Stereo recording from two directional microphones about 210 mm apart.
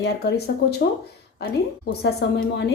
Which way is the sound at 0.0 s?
50° left (ahead or behind).